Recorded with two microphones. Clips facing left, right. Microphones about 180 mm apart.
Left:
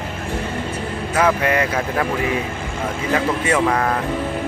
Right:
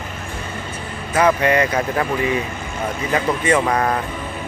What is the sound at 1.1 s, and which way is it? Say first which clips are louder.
Speech: right 2 dB; centre (ahead or behind).